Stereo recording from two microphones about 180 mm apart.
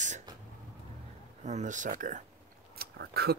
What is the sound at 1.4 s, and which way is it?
Speech, 40° right (ahead or behind).